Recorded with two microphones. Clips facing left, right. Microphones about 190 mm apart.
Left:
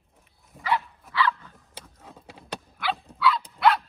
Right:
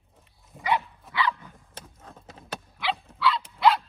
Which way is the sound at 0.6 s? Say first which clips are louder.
Right 1 dB; 20° right (ahead or behind).